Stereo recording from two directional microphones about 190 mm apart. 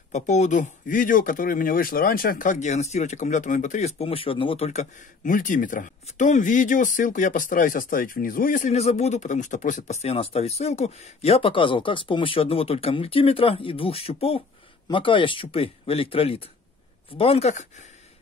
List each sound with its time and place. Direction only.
0.1 s speech: 40° left (ahead or behind)